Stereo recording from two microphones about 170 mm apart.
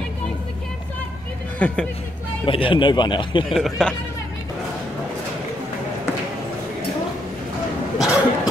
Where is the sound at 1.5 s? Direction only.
5° left (ahead or behind).